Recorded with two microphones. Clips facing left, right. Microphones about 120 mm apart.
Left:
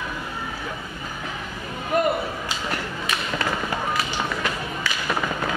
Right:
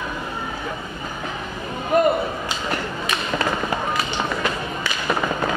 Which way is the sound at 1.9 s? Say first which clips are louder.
Right 4 dB; 25° right (ahead or behind).